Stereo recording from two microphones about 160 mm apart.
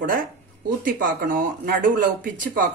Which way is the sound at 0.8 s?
60° right (ahead or behind).